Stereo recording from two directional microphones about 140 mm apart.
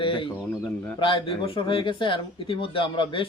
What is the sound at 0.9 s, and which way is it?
Speech, 35° left (ahead or behind).